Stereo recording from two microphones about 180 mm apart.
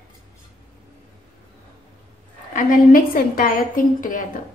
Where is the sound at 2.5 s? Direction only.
50° left (ahead or behind).